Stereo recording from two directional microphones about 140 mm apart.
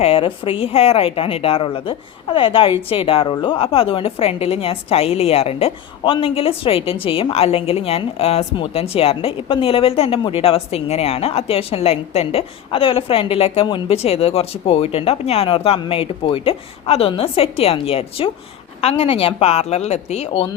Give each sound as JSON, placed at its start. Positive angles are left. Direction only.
{"t": 0.0, "sound": "a woman's voice", "side_deg": 40}